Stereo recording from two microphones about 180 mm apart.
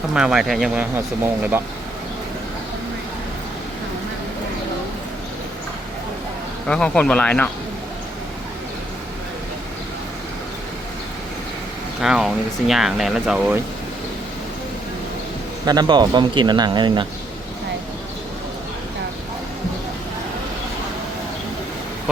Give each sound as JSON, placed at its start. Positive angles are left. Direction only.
{"t": 0.1, "sound": "speech", "side_deg": -5}
{"t": 6.7, "sound": "speech", "side_deg": 5}
{"t": 12.0, "sound": "speech", "side_deg": 0}
{"t": 15.6, "sound": "speech", "side_deg": -20}